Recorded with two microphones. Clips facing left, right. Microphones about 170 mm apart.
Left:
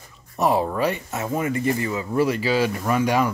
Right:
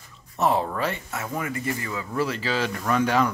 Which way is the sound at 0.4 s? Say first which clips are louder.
Left 3 dB; 15° left (ahead or behind).